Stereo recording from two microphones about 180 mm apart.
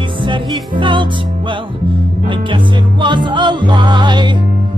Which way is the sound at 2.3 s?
25° right (ahead or behind).